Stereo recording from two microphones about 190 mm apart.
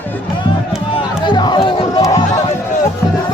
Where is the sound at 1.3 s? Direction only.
25° left (ahead or behind).